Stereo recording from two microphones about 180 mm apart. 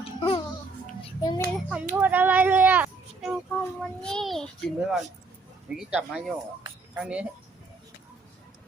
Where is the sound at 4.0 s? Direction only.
5° left (ahead or behind).